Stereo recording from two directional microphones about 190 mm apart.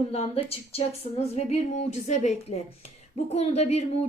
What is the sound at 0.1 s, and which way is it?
A woman's voice, 30° left (ahead or behind).